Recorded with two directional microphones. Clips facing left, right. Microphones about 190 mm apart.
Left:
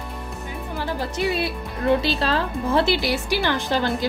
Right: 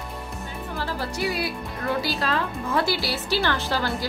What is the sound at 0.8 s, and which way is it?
Speech, 20° left (ahead or behind).